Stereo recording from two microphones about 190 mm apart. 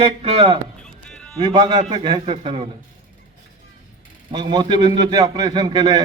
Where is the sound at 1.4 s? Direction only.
25° right (ahead or behind).